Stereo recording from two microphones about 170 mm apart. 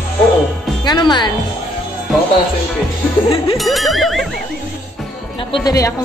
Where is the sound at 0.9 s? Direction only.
25° left (ahead or behind).